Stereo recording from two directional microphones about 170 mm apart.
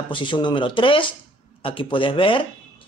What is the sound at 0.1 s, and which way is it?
Speech, 30° left (ahead or behind).